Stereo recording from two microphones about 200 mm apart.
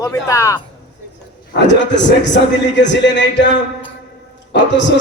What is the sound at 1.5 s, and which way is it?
A man's voice, 60° left (ahead or behind).